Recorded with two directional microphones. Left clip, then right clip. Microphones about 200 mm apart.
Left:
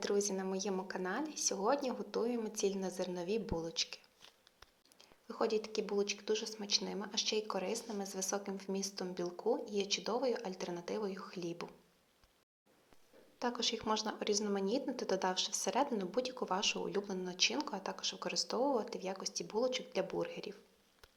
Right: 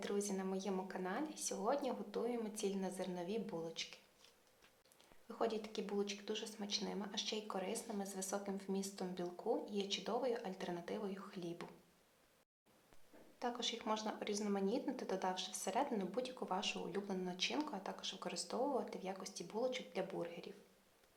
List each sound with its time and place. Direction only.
0.0 s speech: 20° left (ahead or behind)
5.3 s speech: 20° left (ahead or behind)
13.4 s speech: 20° left (ahead or behind)